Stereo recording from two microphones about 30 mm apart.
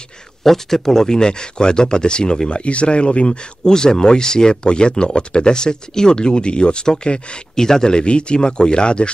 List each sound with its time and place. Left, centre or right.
0.4 s speech: centre; by 2.3 s left
2.4 s speech: left
3.6 s speech: left
7.5 s speech: centre